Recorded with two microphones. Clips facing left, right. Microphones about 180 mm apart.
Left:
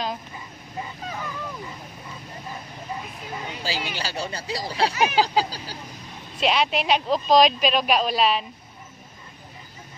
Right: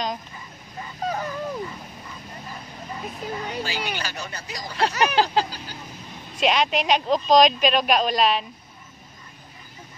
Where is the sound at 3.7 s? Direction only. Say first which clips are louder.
Even; 30° left (ahead or behind).